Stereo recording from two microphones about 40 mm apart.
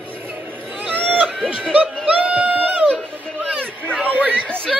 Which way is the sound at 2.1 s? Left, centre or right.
Right.